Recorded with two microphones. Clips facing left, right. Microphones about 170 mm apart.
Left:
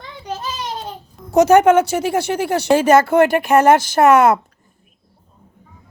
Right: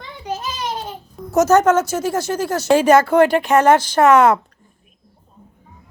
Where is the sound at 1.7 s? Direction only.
65° left (ahead or behind).